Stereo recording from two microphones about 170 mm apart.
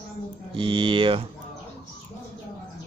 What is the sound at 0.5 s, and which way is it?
Speech, 30° right (ahead or behind).